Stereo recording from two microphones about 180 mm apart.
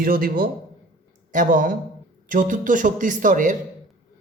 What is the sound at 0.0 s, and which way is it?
A man's voice, 55° right (ahead or behind).